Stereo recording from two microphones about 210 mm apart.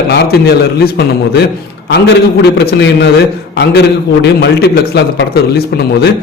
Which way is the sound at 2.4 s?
55° left (ahead or behind).